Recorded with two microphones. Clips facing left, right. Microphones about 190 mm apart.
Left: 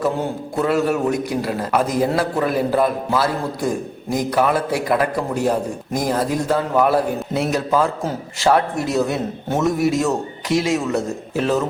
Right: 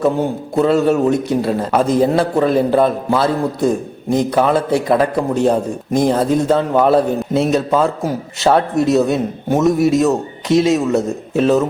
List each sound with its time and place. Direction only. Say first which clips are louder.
0.0 s a man's voice: right 5 dB; 25° right (ahead or behind)